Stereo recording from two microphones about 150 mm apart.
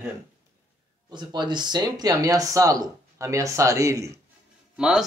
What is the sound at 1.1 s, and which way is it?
Speech, 30° right (ahead or behind).